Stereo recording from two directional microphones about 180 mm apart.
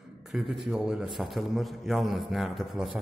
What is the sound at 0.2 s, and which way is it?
A man's voice, centre (ahead or behind).